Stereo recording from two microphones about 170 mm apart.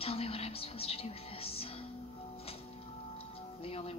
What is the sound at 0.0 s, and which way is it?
Music, 35° left (ahead or behind).